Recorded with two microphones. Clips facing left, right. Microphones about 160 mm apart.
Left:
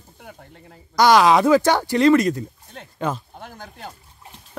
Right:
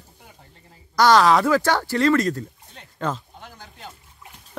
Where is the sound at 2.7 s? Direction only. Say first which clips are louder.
Left 2 dB; 55° left (ahead or behind).